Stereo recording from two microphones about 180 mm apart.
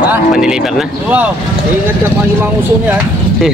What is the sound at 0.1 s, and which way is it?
Speech, 5° right (ahead or behind).